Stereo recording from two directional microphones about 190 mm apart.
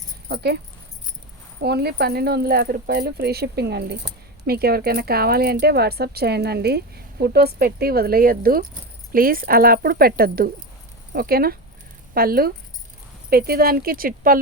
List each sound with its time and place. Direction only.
0.3 s speech: 60° right (ahead or behind)
1.6 s speech: 60° right (ahead or behind)